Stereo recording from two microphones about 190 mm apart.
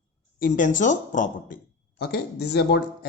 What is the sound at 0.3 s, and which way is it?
Speech, 45° left (ahead or behind).